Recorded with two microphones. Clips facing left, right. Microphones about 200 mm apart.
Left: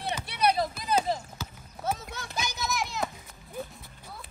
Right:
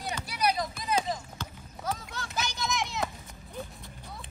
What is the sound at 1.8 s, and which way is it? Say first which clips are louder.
Clip-clop: left 3 dB; 25° left (ahead or behind).